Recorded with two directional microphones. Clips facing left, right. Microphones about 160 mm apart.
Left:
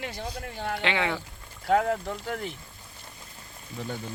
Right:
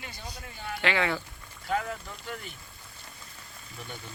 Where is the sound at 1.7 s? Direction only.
70° left (ahead or behind).